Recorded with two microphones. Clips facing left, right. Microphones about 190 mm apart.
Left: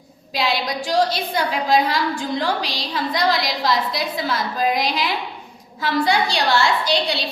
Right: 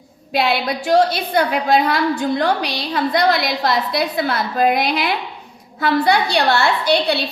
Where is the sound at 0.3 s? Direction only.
60° right (ahead or behind).